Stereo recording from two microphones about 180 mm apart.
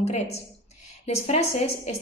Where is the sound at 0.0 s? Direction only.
35° left (ahead or behind).